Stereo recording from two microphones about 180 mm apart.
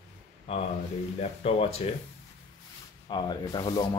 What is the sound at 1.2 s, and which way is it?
Speech, 35° left (ahead or behind).